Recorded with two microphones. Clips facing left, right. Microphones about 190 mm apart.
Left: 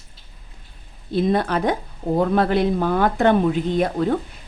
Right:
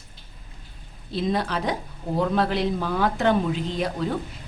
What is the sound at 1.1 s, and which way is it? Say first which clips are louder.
A woman's voice: left 6 dB; 55° left (ahead or behind).